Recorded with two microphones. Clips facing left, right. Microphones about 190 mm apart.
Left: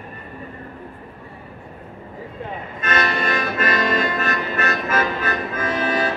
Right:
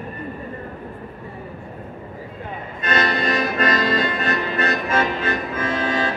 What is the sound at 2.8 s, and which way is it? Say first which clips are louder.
Accordion: right 1 dB; 35° right (ahead or behind).